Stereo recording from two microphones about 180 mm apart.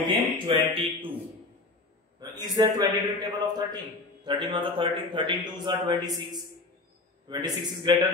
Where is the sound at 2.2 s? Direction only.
20° right (ahead or behind).